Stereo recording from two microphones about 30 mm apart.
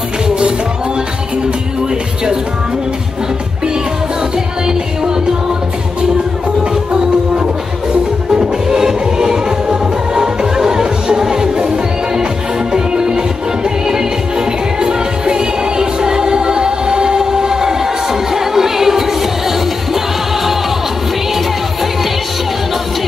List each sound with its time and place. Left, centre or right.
6.9 s music: right; by 19.1 s centre